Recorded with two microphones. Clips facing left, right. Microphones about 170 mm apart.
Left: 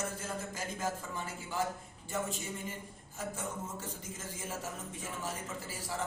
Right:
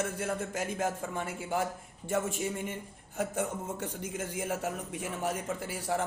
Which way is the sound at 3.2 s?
65° right (ahead or behind).